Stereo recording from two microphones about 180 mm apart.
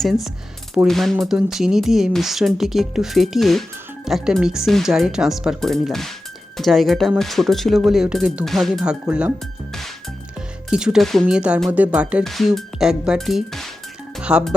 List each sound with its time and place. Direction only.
0.0 s speech: centre (ahead or behind)
10.7 s speech: 5° right (ahead or behind)